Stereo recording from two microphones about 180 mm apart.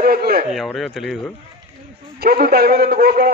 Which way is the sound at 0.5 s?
Centre (ahead or behind).